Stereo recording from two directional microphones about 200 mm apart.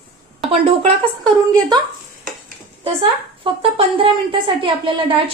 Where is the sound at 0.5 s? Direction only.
30° right (ahead or behind).